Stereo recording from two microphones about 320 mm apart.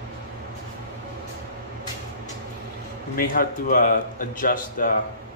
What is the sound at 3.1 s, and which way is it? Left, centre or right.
Speech, left.